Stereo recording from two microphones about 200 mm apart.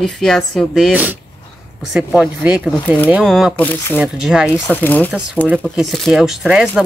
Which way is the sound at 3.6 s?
10° left (ahead or behind).